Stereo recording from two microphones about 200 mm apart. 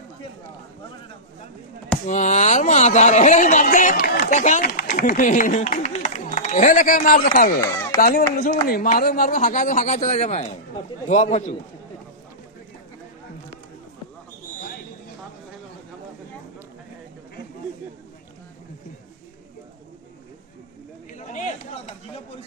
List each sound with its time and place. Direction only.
2.0 s speech: 35° left (ahead or behind)
21.1 s chatter: 40° left (ahead or behind)